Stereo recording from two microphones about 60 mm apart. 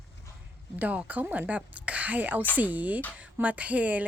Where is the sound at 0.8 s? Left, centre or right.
Right.